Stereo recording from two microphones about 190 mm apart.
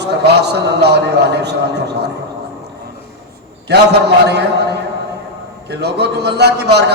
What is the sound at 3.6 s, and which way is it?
Speech, 60° right (ahead or behind).